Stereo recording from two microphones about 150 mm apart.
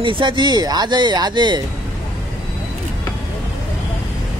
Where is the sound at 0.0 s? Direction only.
35° right (ahead or behind).